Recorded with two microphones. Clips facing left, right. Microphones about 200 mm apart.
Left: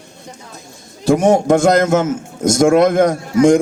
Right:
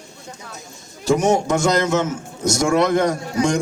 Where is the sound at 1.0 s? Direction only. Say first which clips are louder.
Left 5 dB; 55° left (ahead or behind).